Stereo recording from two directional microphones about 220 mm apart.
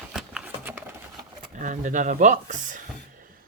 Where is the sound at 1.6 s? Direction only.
35° right (ahead or behind).